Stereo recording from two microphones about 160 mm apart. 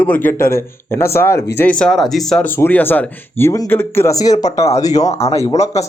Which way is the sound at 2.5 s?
15° left (ahead or behind).